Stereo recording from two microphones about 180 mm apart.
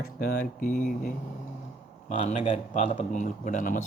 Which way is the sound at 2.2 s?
35° left (ahead or behind).